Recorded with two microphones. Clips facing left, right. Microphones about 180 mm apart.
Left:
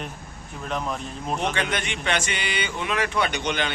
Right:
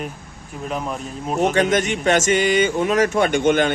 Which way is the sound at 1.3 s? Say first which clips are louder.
Right 10 dB; 45° right (ahead or behind).